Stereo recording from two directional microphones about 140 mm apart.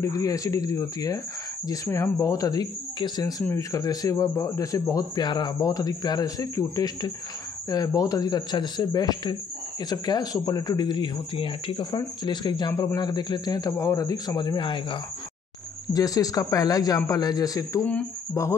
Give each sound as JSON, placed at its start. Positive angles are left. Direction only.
{"t": 0.0, "sound": "speech", "side_deg": 25}
{"t": 15.9, "sound": "speech", "side_deg": 25}